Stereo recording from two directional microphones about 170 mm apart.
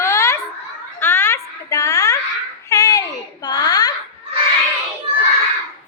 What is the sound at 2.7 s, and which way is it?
Child singing, 20° left (ahead or behind).